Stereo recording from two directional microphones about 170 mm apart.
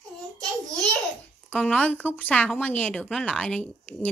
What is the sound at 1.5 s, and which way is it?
Speech, 5° left (ahead or behind).